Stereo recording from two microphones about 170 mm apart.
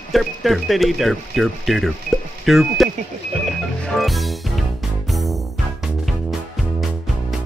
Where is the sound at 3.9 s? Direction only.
Centre (ahead or behind).